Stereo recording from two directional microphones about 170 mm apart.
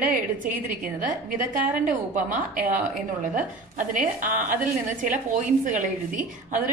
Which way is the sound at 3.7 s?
50° right (ahead or behind).